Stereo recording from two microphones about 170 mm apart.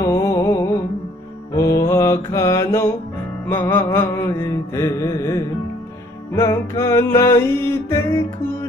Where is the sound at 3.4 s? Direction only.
10° left (ahead or behind).